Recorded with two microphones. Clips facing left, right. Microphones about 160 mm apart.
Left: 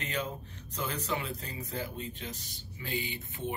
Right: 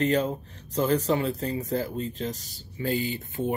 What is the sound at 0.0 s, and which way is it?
Speech, 35° right (ahead or behind).